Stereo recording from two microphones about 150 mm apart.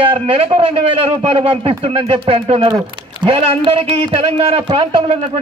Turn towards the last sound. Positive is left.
turn(degrees=-35)  # may be behind; listen again after turning